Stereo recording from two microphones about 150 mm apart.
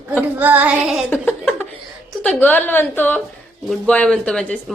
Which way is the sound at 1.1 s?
15° left (ahead or behind).